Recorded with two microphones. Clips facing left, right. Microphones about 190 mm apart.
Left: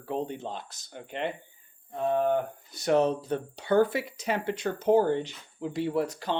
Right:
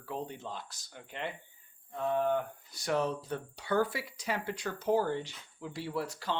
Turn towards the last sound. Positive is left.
turn(degrees=20)  # may be behind; listen again after turning